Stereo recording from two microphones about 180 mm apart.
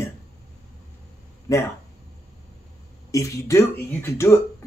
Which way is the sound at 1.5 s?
20° left (ahead or behind).